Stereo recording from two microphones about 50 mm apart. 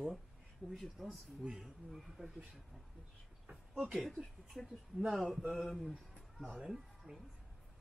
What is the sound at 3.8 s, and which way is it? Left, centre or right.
Speech, centre.